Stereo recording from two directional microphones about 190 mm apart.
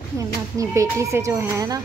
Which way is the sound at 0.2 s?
15° right (ahead or behind).